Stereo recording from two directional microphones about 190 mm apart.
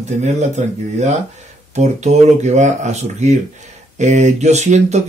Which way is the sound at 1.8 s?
35° right (ahead or behind).